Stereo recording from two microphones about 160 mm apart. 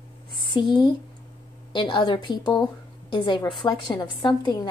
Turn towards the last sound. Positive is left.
turn(degrees=30)  # may be behind; listen again after turning